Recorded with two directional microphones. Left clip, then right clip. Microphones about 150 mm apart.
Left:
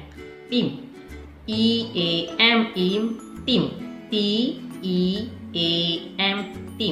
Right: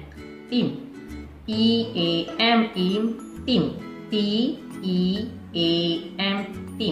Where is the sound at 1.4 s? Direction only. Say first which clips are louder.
Even; 15° left (ahead or behind).